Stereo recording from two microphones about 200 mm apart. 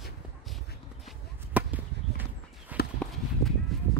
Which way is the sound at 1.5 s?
10° right (ahead or behind).